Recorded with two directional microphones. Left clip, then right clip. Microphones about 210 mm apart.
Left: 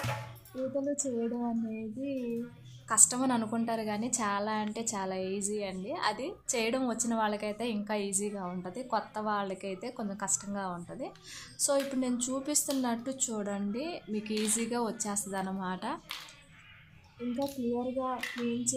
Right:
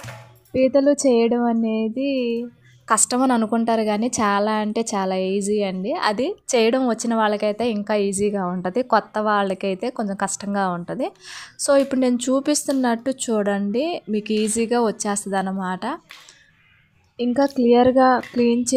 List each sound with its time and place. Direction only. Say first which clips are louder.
0.7 s a woman's voice: right 16 dB; 35° right (ahead or behind)
17.4 s a woman's voice: right 19 dB; 40° right (ahead or behind)